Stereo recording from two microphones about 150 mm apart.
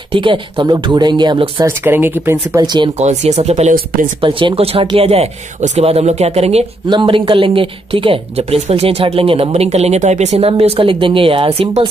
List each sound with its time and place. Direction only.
0.1 s speech: 35° right (ahead or behind)
1.7 s speech: 15° right (ahead or behind)
2.6 s speech: 30° right (ahead or behind)
3.0 s speech: 50° right (ahead or behind)
4.2 s speech: 35° right (ahead or behind)